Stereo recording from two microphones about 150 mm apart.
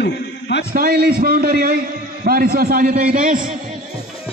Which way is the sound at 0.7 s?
85° right.